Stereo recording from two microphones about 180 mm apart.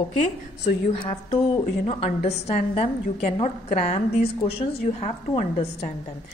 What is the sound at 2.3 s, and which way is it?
A woman's voice, 35° left (ahead or behind).